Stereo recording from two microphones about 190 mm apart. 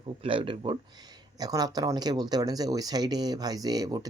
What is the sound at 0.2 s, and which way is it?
Speech, 25° right (ahead or behind).